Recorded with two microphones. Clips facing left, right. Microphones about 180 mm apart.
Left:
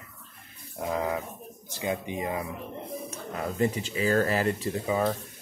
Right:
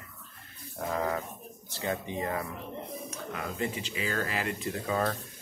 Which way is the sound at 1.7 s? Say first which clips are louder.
Left 2 dB; 15° left (ahead or behind).